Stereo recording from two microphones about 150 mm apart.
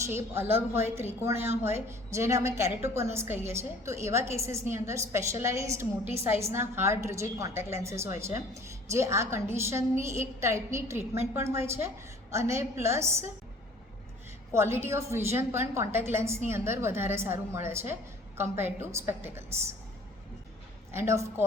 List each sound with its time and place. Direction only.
0.0 s a woman's voice: 15° right (ahead or behind)
14.5 s a woman's voice: 15° right (ahead or behind)
20.9 s a woman's voice: 20° right (ahead or behind)